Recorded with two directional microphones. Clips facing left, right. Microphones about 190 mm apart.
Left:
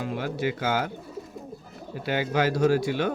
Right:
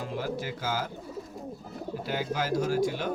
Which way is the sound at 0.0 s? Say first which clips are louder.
Left 4 dB; 70° left (ahead or behind).